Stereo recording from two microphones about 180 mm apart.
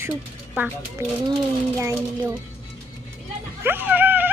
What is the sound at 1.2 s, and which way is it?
A child's voice, 20° right (ahead or behind).